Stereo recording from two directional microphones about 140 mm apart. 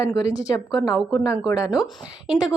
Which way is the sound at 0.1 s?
25° left (ahead or behind).